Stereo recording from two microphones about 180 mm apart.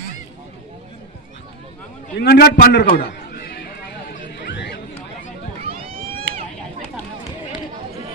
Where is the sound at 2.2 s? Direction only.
60° left (ahead or behind).